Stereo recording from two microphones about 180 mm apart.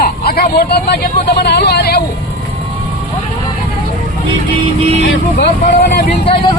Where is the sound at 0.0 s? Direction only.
60° left (ahead or behind).